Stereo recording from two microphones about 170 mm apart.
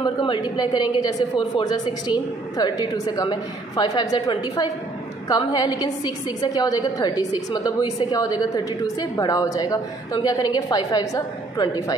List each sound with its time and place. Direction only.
0.0 s a woman's voice: 30° left (ahead or behind)